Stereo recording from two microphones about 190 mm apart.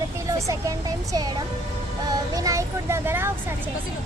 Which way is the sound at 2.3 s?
15° right (ahead or behind).